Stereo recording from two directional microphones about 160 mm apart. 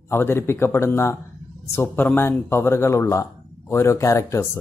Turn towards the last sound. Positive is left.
turn(degrees=15)  # may be behind; listen again after turning